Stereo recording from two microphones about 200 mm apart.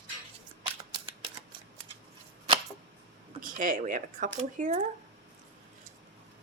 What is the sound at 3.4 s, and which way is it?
Speech, 40° right (ahead or behind).